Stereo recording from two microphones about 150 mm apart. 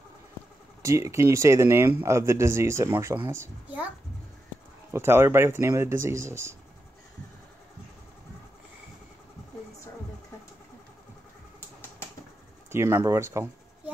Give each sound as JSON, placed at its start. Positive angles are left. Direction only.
{"t": 0.8, "sound": "speech", "side_deg": -20}
{"t": 4.9, "sound": "speech", "side_deg": -15}
{"t": 12.7, "sound": "speech", "side_deg": -15}